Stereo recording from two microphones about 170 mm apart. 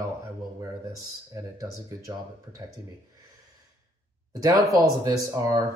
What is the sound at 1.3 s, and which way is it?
Speech, 20° right (ahead or behind).